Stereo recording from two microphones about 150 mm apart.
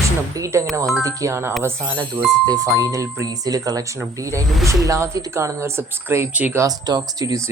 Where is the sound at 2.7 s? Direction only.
25° right (ahead or behind).